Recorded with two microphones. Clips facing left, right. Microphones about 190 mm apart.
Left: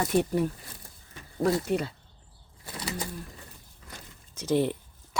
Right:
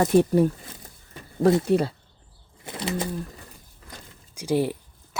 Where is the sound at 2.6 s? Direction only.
25° right (ahead or behind).